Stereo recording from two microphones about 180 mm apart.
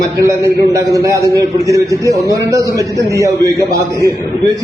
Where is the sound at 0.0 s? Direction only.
15° right (ahead or behind).